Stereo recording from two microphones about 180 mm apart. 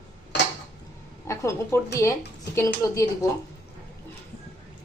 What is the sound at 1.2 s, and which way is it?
A woman's voice, 15° left (ahead or behind).